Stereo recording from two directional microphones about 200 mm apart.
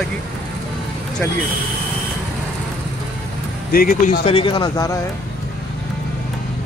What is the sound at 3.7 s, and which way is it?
Speech, 45° left (ahead or behind).